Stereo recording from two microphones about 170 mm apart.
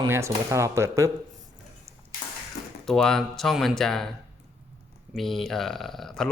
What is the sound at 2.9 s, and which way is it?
Speech, centre (ahead or behind).